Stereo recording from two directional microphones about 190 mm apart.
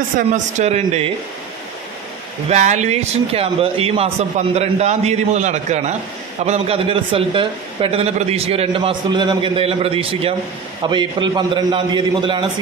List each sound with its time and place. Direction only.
0.3 s speech: 35° right (ahead or behind)
2.5 s a man's voice: 40° right (ahead or behind)